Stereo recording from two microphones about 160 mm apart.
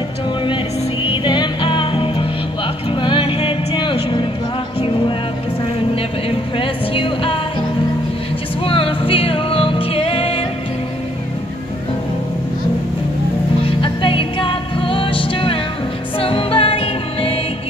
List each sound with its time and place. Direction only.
1.0 s music: 30° left (ahead or behind)
6.5 s music: 35° left (ahead or behind)
8.6 s music: 35° left (ahead or behind)
13.7 s music: 30° left (ahead or behind)